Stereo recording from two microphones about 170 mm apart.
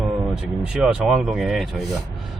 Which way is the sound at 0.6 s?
5° right (ahead or behind).